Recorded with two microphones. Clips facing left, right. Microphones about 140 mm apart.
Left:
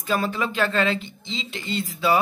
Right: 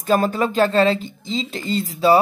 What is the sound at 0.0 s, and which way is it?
Speech, 45° right (ahead or behind).